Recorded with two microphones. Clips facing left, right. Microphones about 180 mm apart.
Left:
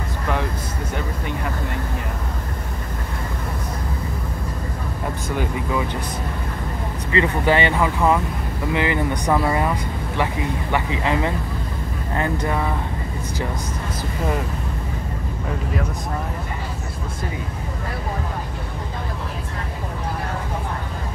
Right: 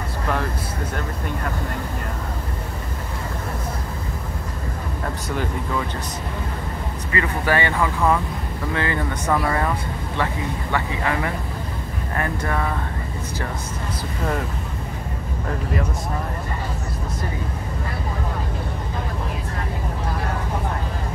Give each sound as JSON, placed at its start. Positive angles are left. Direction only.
{"t": 5.3, "sound": "speech", "side_deg": 10}
{"t": 7.1, "sound": "speech", "side_deg": 20}